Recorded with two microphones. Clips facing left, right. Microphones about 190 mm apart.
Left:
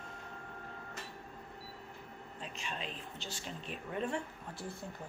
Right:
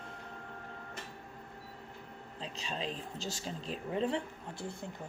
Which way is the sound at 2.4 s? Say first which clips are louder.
Right 4 dB; 30° right (ahead or behind).